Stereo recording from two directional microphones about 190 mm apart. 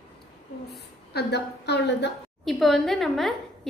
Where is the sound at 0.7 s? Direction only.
60° left (ahead or behind).